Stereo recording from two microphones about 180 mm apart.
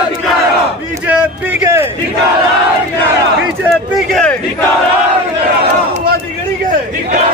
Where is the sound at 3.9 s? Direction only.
5° left (ahead or behind).